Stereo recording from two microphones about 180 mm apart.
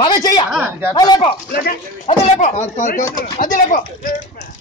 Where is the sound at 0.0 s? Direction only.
25° left (ahead or behind).